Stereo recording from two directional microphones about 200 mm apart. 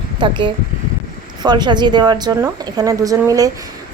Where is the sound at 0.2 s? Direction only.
25° right (ahead or behind).